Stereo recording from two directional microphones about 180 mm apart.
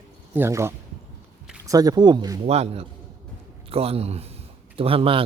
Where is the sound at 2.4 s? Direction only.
35° right (ahead or behind).